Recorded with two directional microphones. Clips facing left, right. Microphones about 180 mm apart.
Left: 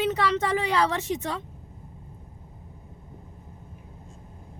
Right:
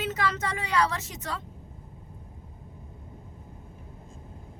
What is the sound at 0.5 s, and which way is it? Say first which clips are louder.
Speech: left 3 dB; 25° left (ahead or behind).